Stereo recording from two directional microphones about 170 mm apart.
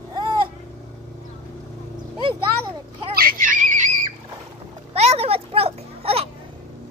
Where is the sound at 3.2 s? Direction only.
55° right (ahead or behind).